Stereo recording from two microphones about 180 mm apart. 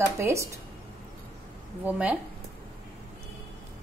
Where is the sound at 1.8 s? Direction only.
5° right (ahead or behind).